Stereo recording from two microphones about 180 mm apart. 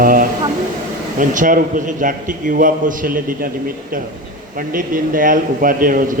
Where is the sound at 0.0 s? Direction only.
50° right (ahead or behind).